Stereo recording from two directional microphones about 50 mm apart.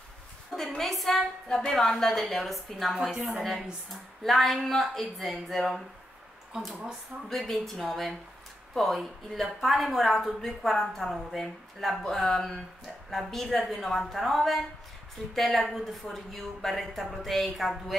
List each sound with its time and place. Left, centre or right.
0.6 s a woman's voice: centre
1.6 s a woman's voice: centre